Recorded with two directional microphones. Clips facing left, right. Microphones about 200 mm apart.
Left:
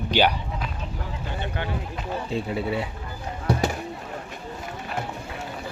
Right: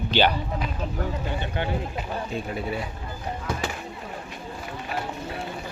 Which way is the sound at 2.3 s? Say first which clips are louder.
Left 3 dB; 25° left (ahead or behind).